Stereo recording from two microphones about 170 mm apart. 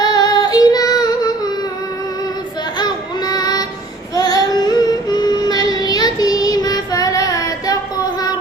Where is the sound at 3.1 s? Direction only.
25° left (ahead or behind).